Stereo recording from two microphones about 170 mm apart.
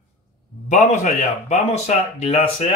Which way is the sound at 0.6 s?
45° left (ahead or behind).